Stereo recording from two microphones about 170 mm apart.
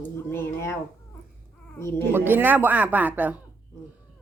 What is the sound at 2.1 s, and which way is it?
Speech, 10° right (ahead or behind).